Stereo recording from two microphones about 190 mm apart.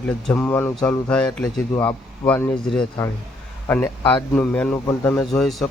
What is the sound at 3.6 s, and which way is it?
A man's voice, 15° left (ahead or behind).